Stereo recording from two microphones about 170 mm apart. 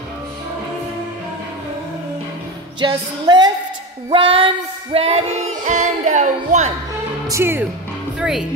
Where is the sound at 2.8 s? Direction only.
25° right (ahead or behind).